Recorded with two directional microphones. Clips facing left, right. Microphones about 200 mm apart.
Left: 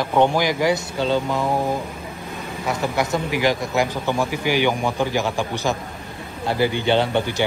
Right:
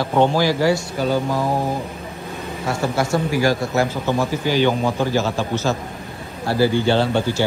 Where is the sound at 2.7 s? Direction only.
20° left (ahead or behind).